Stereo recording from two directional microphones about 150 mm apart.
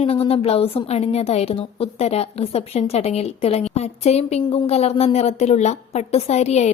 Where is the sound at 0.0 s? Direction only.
40° left (ahead or behind).